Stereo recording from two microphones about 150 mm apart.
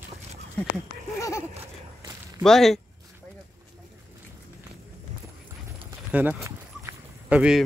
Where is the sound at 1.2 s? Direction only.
20° left (ahead or behind).